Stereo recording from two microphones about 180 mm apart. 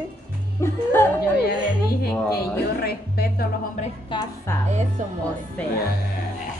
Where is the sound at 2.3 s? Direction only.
60° left (ahead or behind).